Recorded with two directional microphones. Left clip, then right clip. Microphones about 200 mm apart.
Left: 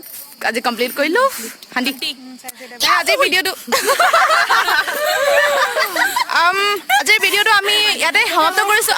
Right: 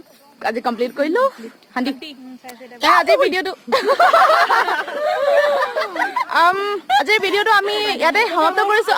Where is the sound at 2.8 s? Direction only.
15° left (ahead or behind).